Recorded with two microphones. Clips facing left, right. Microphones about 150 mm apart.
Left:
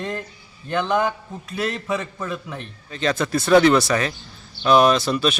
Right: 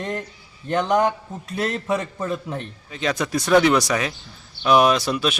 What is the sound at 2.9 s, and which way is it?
Speech, 10° right (ahead or behind).